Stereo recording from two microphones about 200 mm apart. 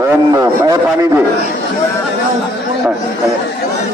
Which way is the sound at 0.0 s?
15° right (ahead or behind).